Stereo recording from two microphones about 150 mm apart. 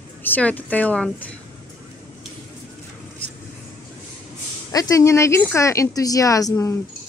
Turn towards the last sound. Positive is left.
turn(degrees=25)  # may be behind; listen again after turning